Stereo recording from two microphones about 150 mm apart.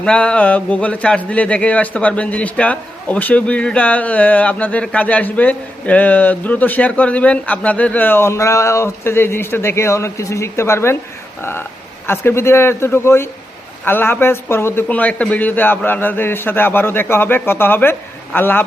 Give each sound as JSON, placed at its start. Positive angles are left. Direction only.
{"t": 0.0, "sound": "speech", "side_deg": 5}
{"t": 12.0, "sound": "speech", "side_deg": 15}